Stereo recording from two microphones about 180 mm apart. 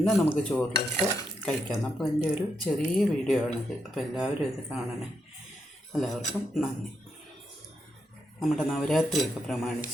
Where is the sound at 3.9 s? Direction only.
Centre (ahead or behind).